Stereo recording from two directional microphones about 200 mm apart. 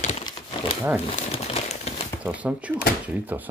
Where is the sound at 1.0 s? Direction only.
30° left (ahead or behind).